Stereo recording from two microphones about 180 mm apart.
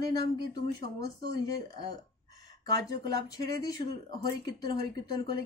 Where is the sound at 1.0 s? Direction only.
60° right (ahead or behind).